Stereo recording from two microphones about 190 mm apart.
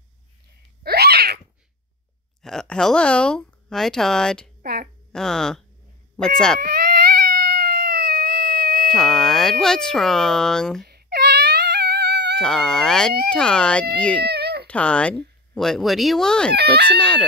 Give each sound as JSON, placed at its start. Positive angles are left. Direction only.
{"t": 0.8, "sound": "a sound", "side_deg": -55}
{"t": 2.4, "sound": "speech", "side_deg": 5}
{"t": 6.6, "sound": "cat", "side_deg": -55}
{"t": 8.9, "sound": "speech", "side_deg": 0}
{"t": 10.9, "sound": "wail", "side_deg": -55}
{"t": 12.4, "sound": "speech", "side_deg": 5}
{"t": 14.2, "sound": "cat", "side_deg": -60}
{"t": 14.7, "sound": "speech", "side_deg": 5}
{"t": 16.5, "sound": "speech", "side_deg": -60}
{"t": 17.0, "sound": "speech", "side_deg": 5}